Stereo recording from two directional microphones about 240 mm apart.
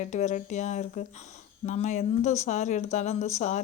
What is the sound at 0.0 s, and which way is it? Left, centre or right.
A woman's voice, left.